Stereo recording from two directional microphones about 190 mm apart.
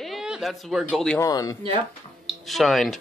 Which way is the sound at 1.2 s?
20° left (ahead or behind).